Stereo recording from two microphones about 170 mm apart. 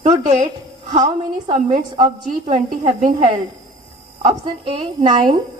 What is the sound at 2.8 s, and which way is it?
Speech, 45° right (ahead or behind).